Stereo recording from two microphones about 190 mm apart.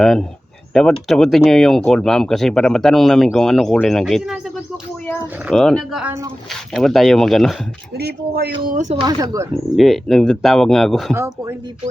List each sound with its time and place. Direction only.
0.0 s speech: centre (ahead or behind)
5.5 s speech: 5° left (ahead or behind)
7.9 s speech: 55° right (ahead or behind)
8.6 s speech: 40° right (ahead or behind)
9.0 s speech: 20° right (ahead or behind)
9.7 s speech: centre (ahead or behind)
11.1 s speech: 15° right (ahead or behind)